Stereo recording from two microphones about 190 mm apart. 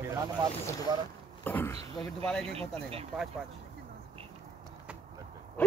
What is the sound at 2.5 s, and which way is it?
Speech, 30° right (ahead or behind).